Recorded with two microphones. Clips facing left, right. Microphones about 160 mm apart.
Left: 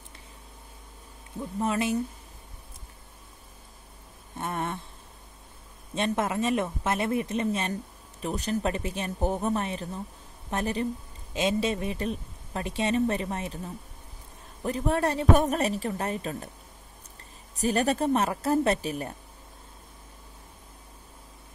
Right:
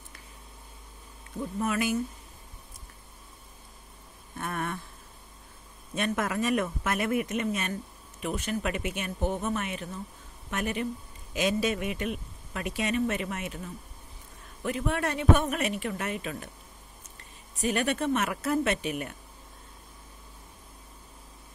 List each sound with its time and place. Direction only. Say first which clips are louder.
1.6 s speech: left 2 dB; 30° left (ahead or behind)
4.4 s speech: left 2 dB; 25° left (ahead or behind)
5.9 s a man's voice: left 2 dB; 25° left (ahead or behind)
14.6 s a man's voice: left 3 dB; 35° left (ahead or behind)
17.6 s a man's voice: left 3 dB; 35° left (ahead or behind)